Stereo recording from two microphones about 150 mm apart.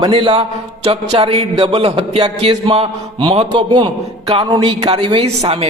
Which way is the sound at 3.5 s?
30° right (ahead or behind).